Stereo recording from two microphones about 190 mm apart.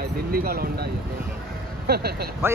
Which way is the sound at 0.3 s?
50° right (ahead or behind).